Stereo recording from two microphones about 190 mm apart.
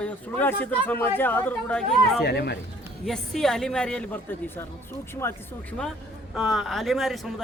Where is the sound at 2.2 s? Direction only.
60° left (ahead or behind).